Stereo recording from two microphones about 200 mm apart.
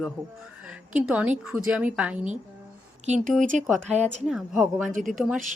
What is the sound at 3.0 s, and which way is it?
Speech, 35° right (ahead or behind).